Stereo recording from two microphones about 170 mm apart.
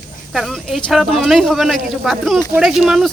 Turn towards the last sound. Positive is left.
turn(degrees=0)  # may be behind; listen again after turning